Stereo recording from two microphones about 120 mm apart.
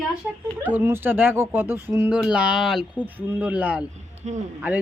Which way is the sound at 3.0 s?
15° right (ahead or behind).